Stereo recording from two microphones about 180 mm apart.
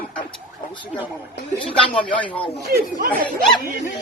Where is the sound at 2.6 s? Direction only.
55° right (ahead or behind).